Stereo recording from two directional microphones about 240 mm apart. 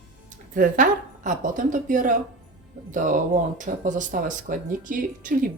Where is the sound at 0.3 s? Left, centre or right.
Right.